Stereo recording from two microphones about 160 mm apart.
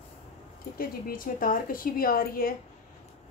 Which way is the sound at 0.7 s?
65° left (ahead or behind).